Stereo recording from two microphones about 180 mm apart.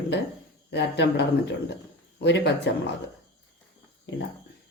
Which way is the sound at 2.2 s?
75° left (ahead or behind).